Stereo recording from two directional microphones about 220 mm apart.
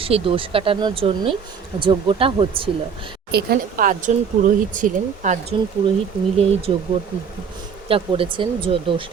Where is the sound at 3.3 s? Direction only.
40° right (ahead or behind); by 5.9 s 25° right (ahead or behind).